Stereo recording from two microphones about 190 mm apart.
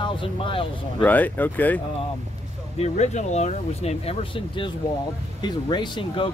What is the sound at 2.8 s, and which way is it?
Speech, 35° left (ahead or behind).